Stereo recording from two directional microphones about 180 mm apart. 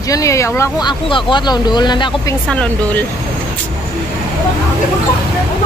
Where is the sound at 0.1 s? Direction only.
15° left (ahead or behind).